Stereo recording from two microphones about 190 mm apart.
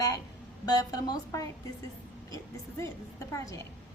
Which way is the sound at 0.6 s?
20° left (ahead or behind).